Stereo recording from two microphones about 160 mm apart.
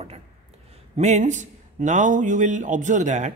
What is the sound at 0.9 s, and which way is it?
A man's voice, 45° right (ahead or behind).